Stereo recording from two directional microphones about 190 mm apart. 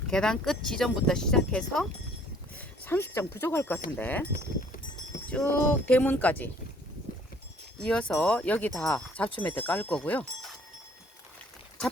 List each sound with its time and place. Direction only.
0.1 s speech: 5° left (ahead or behind)
4.3 s livestock: 40° left (ahead or behind)
5.3 s speech: 5° left (ahead or behind)
7.8 s speech: 5° left (ahead or behind)